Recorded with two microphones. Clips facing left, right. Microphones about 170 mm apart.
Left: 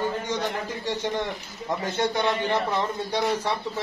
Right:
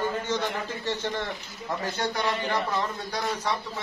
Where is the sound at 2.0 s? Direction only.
20° left (ahead or behind).